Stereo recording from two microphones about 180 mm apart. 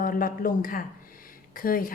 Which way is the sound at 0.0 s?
50° left (ahead or behind).